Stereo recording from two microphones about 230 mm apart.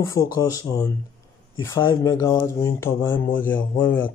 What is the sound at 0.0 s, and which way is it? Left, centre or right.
Speech, centre.